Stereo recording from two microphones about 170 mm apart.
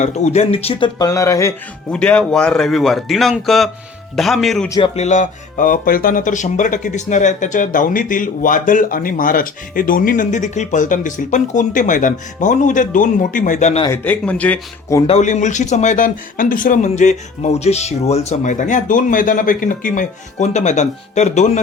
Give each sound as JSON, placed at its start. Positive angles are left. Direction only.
{"t": 0.0, "sound": "speech", "side_deg": 40}
{"t": 0.9, "sound": "speech", "side_deg": 20}
{"t": 1.9, "sound": "a man's voice", "side_deg": 5}
{"t": 4.9, "sound": "speech", "side_deg": 45}
{"t": 13.9, "sound": "speech", "side_deg": 10}
{"t": 15.0, "sound": "speech", "side_deg": 40}